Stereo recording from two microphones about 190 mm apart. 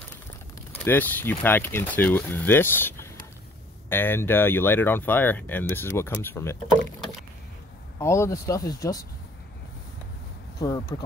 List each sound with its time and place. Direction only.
0.8 s speech: 10° left (ahead or behind)
8.0 s speech: 15° left (ahead or behind)
10.6 s speech: 20° left (ahead or behind)